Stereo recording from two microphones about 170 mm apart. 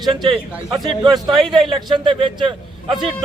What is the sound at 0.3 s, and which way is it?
A man's voice, 25° right (ahead or behind).